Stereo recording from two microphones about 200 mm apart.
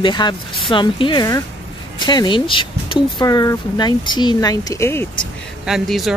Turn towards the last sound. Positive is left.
turn(degrees=0)  # may be behind; listen again after turning